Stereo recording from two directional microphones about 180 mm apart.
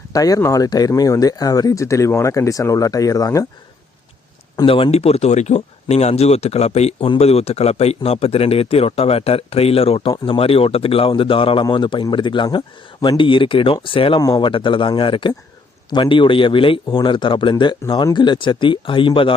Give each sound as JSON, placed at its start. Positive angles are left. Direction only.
{"t": 0.1, "sound": "speech", "side_deg": 20}
{"t": 4.5, "sound": "speech", "side_deg": 30}